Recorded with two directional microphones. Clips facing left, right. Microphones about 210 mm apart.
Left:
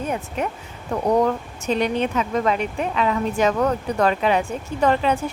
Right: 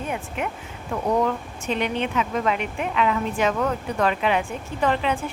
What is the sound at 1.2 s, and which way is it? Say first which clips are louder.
A woman's voice: left 3 dB; 40° left (ahead or behind).